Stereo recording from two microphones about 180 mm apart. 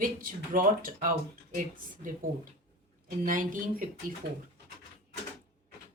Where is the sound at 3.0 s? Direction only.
50° right (ahead or behind).